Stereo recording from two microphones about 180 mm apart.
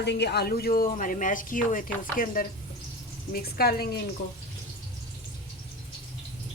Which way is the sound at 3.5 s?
60° left (ahead or behind).